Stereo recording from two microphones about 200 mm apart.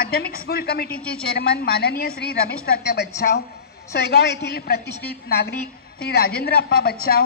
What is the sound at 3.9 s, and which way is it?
A woman's voice, 55° left (ahead or behind).